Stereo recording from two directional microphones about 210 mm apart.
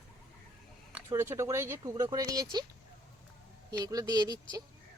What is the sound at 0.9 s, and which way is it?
Speech, 10° right (ahead or behind).